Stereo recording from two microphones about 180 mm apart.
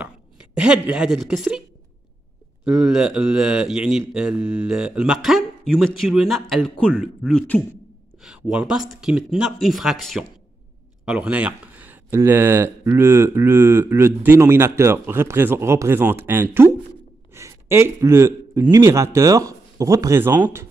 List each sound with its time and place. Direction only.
0.6 s speech: 5° right (ahead or behind)
2.6 s speech: 5° right (ahead or behind)
8.2 s a man's voice: 5° right (ahead or behind)